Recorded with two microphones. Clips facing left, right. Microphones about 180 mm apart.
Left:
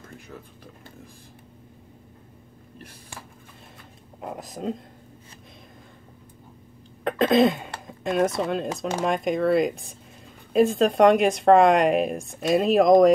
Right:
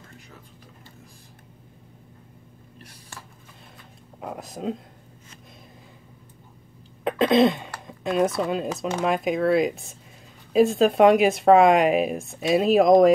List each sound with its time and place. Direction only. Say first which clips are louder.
4.2 s speech: even; centre (ahead or behind)
7.1 s a sound: even; centre (ahead or behind)
8.4 s speech: right 1 dB; centre (ahead or behind)